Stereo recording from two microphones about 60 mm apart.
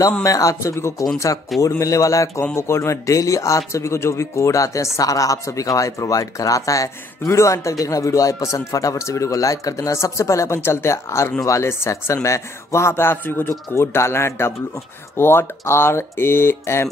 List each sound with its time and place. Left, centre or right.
0.2 s speech: left
1.6 s speech: left
2.5 s a man's voice: left
13.5 s a man's voice: left